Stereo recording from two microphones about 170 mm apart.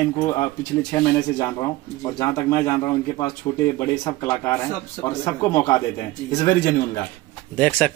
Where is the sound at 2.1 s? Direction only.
20° left (ahead or behind).